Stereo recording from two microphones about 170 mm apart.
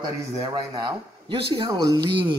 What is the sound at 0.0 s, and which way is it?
A man's voice, 25° right (ahead or behind).